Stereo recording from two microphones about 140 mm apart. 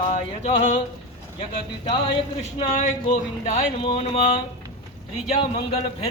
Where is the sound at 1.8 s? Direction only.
40° left (ahead or behind).